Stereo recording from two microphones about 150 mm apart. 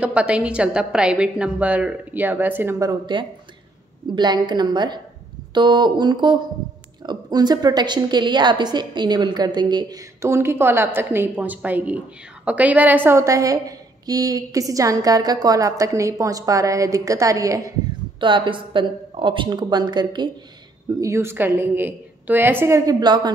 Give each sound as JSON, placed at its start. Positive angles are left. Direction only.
{"t": 0.0, "sound": "a woman's voice", "side_deg": -10}
{"t": 18.2, "sound": "speech", "side_deg": -35}
{"t": 21.0, "sound": "a woman's voice", "side_deg": -20}